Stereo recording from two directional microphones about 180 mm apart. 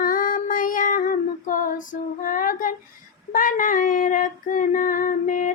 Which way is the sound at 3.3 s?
50° left (ahead or behind).